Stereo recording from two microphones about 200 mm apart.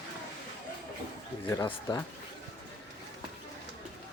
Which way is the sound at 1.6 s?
20° left (ahead or behind).